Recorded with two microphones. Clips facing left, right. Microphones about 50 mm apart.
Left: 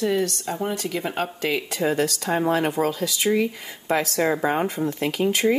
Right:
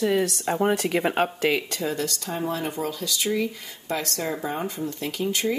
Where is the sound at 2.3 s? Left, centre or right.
Left.